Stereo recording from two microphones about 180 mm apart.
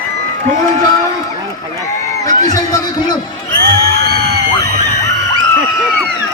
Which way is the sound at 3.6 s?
60° right (ahead or behind).